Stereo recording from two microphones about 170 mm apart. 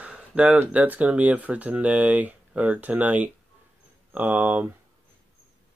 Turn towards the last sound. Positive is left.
turn(degrees=-10)  # may be behind; listen again after turning